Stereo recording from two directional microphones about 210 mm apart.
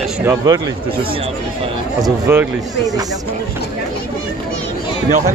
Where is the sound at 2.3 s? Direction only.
10° right (ahead or behind).